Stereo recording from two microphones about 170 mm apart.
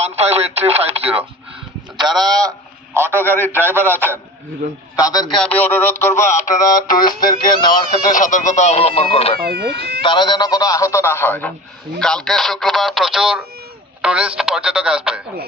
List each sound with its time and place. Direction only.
0.0 s speech: 40° right (ahead or behind)
2.0 s speech: 25° right (ahead or behind)
3.3 s speech: 10° left (ahead or behind)
4.9 s speech: 20° left (ahead or behind)
5.3 s speech: 5° left (ahead or behind); by 7.7 s 25° left (ahead or behind)
8.1 s speech: 50° left (ahead or behind)
9.4 s speech: 65° right (ahead or behind)
10.0 s speech: 25° left (ahead or behind); by 15.2 s 5° right (ahead or behind)